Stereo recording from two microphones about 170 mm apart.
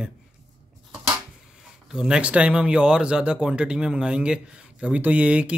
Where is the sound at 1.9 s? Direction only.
5° right (ahead or behind).